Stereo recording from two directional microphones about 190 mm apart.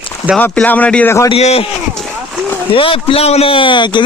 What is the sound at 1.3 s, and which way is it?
Speech, 30° left (ahead or behind).